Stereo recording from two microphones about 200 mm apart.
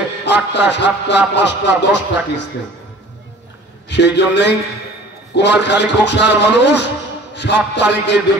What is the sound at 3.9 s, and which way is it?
A man's voice, 60° left (ahead or behind).